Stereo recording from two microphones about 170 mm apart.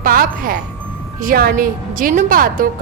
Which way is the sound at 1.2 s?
60° right (ahead or behind).